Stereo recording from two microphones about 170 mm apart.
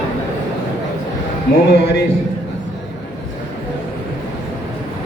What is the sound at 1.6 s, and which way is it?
Speech, 80° left.